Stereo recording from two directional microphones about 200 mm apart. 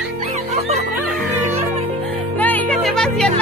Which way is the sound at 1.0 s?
Centre (ahead or behind).